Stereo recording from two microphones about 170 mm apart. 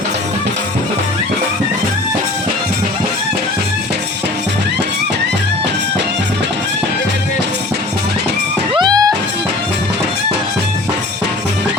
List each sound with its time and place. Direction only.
8.7 s music: 25° right (ahead or behind)